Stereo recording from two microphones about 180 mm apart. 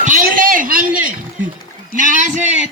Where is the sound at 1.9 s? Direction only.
45° right (ahead or behind).